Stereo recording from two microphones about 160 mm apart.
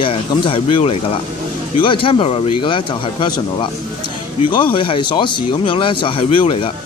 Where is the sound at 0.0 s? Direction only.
35° left (ahead or behind).